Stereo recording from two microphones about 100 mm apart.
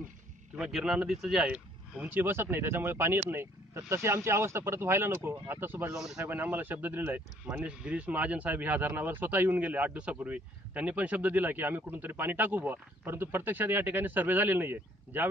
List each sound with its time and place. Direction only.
0.6 s speech: 5° right (ahead or behind); by 15.2 s 20° right (ahead or behind)